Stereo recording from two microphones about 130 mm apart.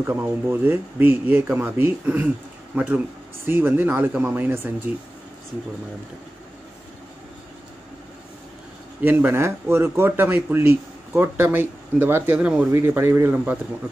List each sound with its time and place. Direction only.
0.0 s speech: 15° right (ahead or behind)
9.0 s speech: 15° right (ahead or behind)